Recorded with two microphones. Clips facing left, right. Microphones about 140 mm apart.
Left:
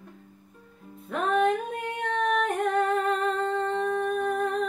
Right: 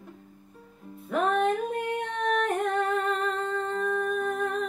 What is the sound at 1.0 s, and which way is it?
Music, centre (ahead or behind).